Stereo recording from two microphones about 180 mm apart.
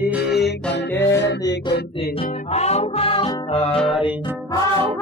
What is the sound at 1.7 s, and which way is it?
Music, 55° left (ahead or behind).